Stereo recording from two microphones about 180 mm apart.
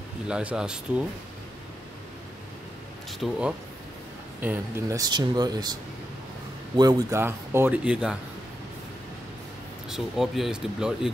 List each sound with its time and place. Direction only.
0.3 s speech: 5° right (ahead or behind)
3.2 s speech: 5° right (ahead or behind); by 5.8 s 20° right (ahead or behind)
6.8 s speech: 20° right (ahead or behind)
9.8 s speech: centre (ahead or behind)